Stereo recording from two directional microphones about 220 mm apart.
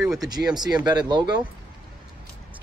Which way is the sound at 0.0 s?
Centre (ahead or behind).